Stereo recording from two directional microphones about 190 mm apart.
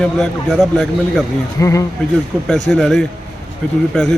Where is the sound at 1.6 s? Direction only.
15° left (ahead or behind).